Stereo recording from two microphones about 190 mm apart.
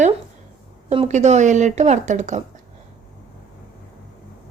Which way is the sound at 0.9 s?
40° right (ahead or behind).